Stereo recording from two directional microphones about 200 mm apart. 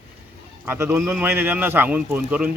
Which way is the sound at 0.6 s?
10° right (ahead or behind).